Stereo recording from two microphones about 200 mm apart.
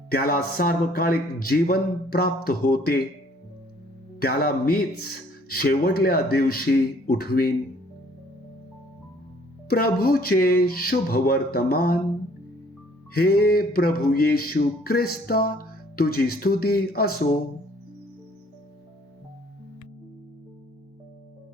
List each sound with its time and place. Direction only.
0.1 s music: 50° left (ahead or behind)
4.2 s music: 50° left (ahead or behind)
9.6 s music: 50° left (ahead or behind)
13.1 s music: 50° left (ahead or behind)